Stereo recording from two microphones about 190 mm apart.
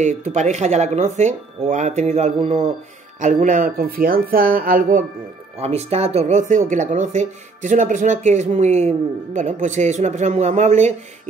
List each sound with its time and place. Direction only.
0.0 s speech: 40° right (ahead or behind)
5.6 s speech: 35° right (ahead or behind)